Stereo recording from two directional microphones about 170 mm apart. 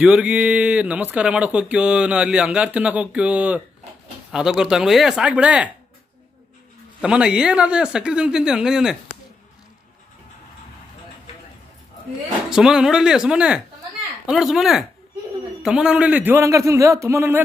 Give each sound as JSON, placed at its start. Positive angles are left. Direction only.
{"t": 0.0, "sound": "speech", "side_deg": -5}
{"t": 7.0, "sound": "speech", "side_deg": -5}
{"t": 12.4, "sound": "speech", "side_deg": -5}